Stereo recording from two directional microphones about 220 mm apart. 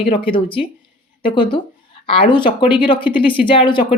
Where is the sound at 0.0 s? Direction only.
25° left (ahead or behind).